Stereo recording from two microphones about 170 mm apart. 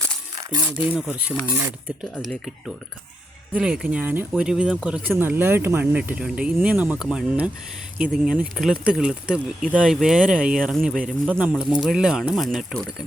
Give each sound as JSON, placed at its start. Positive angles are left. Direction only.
{"t": 0.8, "sound": "speech", "side_deg": -5}